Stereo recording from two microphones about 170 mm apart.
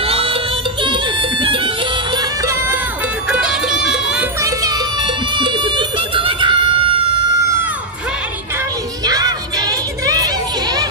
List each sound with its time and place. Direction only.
0.0 s music: 35° right (ahead or behind)
2.1 s music: 20° right (ahead or behind)
3.3 s music: 5° right (ahead or behind)
4.4 s music: 20° right (ahead or behind)
9.0 s children playing: 20° right (ahead or behind)